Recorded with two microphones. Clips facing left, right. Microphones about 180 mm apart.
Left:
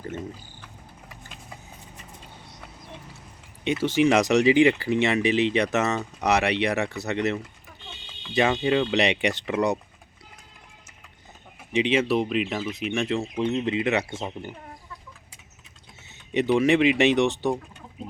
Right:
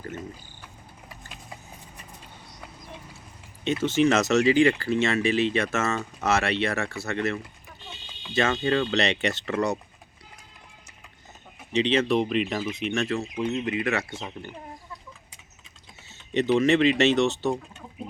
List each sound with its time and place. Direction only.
3.8 s speech: 10° left (ahead or behind)
11.7 s speech: 10° left (ahead or behind)
13.1 s speech: 25° left (ahead or behind)
16.3 s speech: 10° left (ahead or behind)